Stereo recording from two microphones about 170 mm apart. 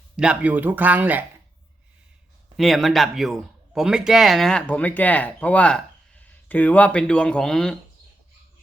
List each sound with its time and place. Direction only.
0.2 s speech: 5° right (ahead or behind)
2.6 s speech: centre (ahead or behind)